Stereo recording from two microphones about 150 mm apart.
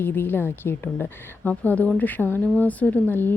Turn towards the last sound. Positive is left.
turn(degrees=15)  # may be behind; listen again after turning